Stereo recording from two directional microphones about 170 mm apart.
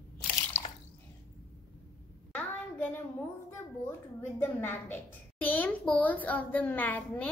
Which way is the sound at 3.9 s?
10° left (ahead or behind).